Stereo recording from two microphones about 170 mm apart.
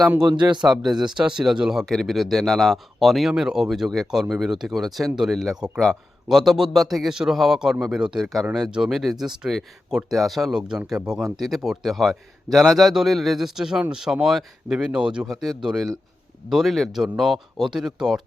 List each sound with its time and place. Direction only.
0.3 s a man's voice: 25° right (ahead or behind)
0.7 s speech: centre (ahead or behind)